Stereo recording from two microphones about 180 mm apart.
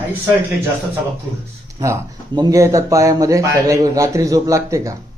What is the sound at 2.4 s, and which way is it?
Speech, 20° right (ahead or behind).